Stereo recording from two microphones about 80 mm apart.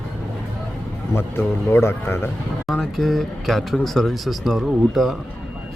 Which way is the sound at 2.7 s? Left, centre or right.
Centre.